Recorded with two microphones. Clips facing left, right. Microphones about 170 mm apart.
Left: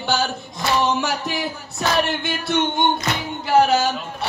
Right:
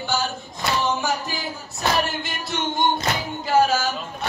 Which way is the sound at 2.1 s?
65° left (ahead or behind).